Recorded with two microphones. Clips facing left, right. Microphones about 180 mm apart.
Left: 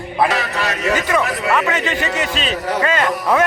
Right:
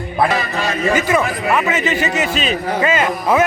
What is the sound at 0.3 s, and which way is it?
Music, 75° left (ahead or behind).